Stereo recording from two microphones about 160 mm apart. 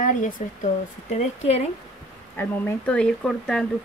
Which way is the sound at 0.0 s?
55° left (ahead or behind).